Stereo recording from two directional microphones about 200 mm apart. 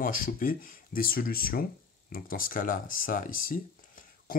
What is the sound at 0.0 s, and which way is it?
Speech, 45° left (ahead or behind).